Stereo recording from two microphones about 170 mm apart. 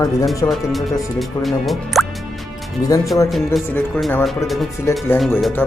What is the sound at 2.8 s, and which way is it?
Speech, 20° left (ahead or behind).